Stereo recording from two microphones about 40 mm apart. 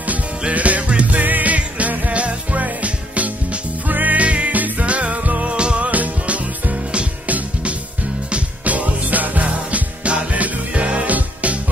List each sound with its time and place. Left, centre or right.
0.4 s music: right
4.8 s music: right
5.9 s music: right